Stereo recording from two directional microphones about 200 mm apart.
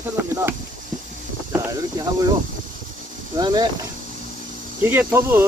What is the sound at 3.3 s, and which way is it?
Speech, 20° right (ahead or behind).